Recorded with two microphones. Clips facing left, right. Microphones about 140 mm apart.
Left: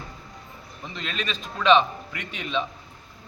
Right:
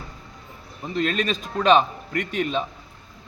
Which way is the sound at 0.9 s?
45° right (ahead or behind).